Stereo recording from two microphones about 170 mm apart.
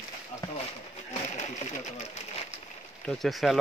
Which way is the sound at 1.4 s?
45° left (ahead or behind).